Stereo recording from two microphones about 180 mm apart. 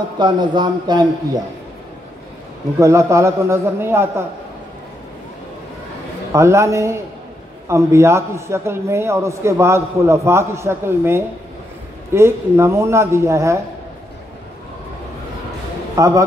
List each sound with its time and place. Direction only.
0.2 s a man's voice: 25° right (ahead or behind)
2.8 s a man's voice: 15° right (ahead or behind)
6.3 s a man's voice: 15° right (ahead or behind)
16.0 s a man's voice: 20° right (ahead or behind)